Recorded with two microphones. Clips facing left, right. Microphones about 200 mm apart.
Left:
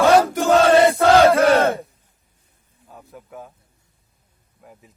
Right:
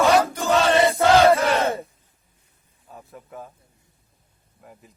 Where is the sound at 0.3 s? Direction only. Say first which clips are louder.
Left 5 dB; 50° left (ahead or behind).